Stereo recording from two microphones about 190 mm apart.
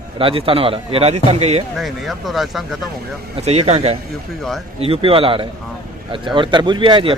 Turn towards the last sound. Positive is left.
turn(degrees=-25)  # may be behind; listen again after turning